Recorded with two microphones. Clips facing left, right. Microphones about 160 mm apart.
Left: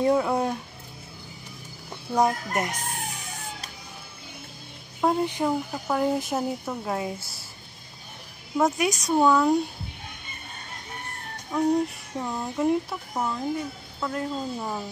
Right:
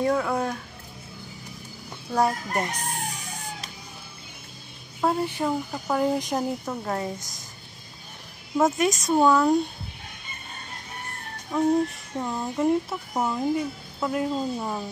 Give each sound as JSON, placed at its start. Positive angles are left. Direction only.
{"t": 0.0, "sound": "speech", "side_deg": 20}
{"t": 2.1, "sound": "speech", "side_deg": 15}
{"t": 5.0, "sound": "speech", "side_deg": 15}
{"t": 5.5, "sound": "speech", "side_deg": 0}
{"t": 8.5, "sound": "speech", "side_deg": 0}
{"t": 11.5, "sound": "speech", "side_deg": 0}
{"t": 13.1, "sound": "speech", "side_deg": -15}
{"t": 14.6, "sound": "speech", "side_deg": -5}